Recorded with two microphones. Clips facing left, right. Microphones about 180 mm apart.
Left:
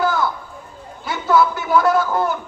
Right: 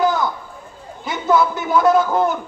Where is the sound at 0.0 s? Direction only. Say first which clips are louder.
Right 2 dB; 20° right (ahead or behind).